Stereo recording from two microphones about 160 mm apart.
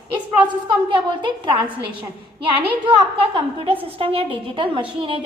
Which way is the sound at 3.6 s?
35° right (ahead or behind).